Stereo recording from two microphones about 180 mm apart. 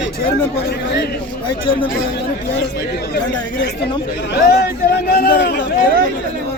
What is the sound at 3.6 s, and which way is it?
Speech, 70° left (ahead or behind).